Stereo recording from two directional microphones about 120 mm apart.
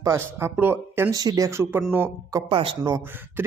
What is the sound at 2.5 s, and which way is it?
Speech, 45° right (ahead or behind).